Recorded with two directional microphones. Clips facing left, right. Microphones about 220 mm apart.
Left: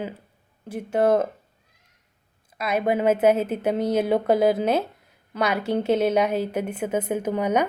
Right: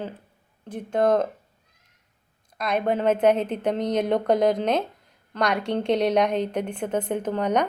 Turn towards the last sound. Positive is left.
turn(degrees=10)  # may be behind; listen again after turning